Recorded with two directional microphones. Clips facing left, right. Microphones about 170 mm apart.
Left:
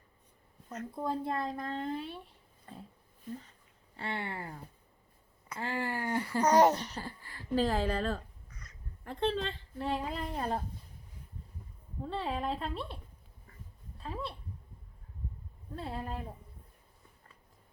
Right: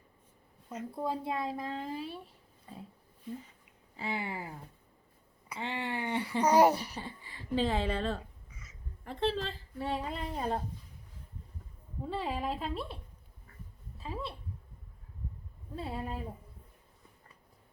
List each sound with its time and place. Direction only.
0.7 s speech: 10° right (ahead or behind)
3.3 s speech: 45° left (ahead or behind)
3.9 s speech: 5° right (ahead or behind)
6.4 s speech: 10° right (ahead or behind)
7.0 s speech: centre (ahead or behind)
12.0 s speech: 5° right (ahead or behind)
14.0 s speech: centre (ahead or behind)
15.7 s speech: centre (ahead or behind)